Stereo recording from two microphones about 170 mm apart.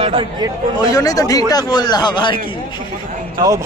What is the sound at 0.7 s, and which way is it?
A man's voice, 20° left (ahead or behind).